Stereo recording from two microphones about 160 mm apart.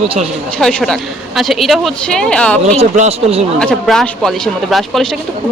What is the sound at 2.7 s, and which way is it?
Speech, 45° right (ahead or behind).